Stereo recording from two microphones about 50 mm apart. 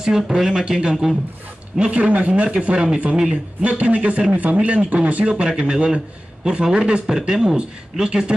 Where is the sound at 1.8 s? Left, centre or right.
Right.